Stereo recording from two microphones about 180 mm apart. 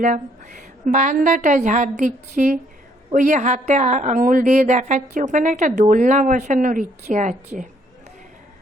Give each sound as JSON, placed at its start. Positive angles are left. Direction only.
{"t": 0.0, "sound": "a woman's voice", "side_deg": -45}